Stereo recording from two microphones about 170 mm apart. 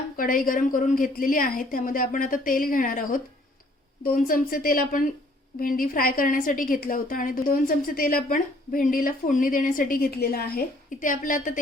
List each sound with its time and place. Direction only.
0.2 s a woman's voice: 55° left (ahead or behind)